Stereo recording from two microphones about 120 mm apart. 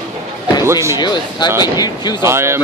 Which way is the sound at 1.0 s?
35° left (ahead or behind).